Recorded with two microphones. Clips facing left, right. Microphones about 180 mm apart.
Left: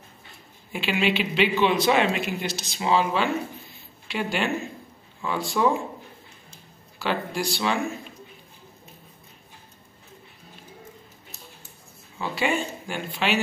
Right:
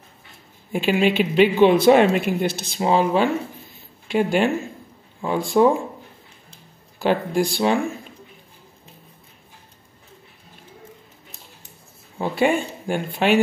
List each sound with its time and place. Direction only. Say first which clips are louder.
0.7 s speech: right 6 dB; 45° right (ahead or behind)
7.0 s speech: right 7 dB; 50° right (ahead or behind)
12.2 s speech: right 6 dB; 50° right (ahead or behind)